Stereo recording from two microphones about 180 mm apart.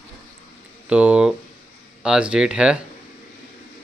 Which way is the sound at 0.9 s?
5° right (ahead or behind).